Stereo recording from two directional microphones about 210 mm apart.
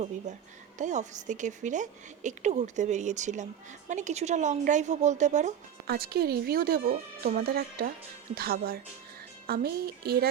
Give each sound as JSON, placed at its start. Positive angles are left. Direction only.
{"t": 0.3, "sound": "a woman's voice", "side_deg": -35}
{"t": 5.9, "sound": "speech", "side_deg": -45}